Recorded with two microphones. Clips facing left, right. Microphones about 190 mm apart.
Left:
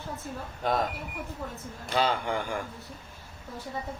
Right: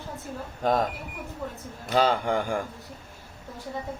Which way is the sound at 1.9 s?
40° right (ahead or behind).